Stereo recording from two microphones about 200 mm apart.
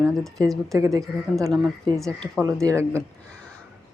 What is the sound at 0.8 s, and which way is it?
Speech, 15° right (ahead or behind).